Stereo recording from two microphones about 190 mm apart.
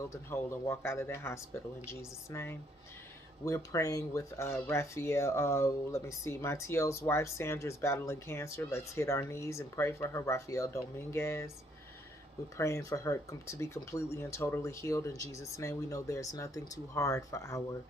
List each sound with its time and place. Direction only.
0.1 s speech: 15° left (ahead or behind)
12.5 s speech: 15° left (ahead or behind)